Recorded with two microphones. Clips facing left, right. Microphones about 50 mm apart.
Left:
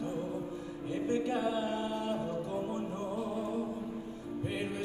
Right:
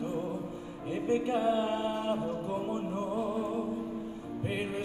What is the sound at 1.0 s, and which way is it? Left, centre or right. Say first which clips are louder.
Music: right 4 dB; right.